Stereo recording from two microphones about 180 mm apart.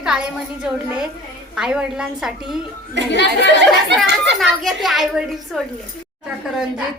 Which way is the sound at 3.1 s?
75° left (ahead or behind).